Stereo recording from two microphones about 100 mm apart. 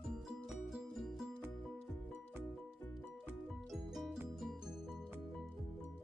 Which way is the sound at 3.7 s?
Centre (ahead or behind).